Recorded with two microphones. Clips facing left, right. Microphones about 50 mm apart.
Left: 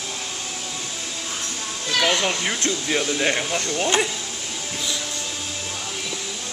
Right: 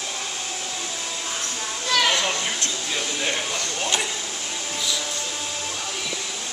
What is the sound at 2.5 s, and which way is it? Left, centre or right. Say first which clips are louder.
Speech: left 5 dB; left.